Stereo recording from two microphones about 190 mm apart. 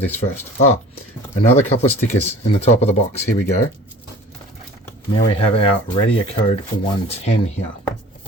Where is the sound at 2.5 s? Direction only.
35° left (ahead or behind).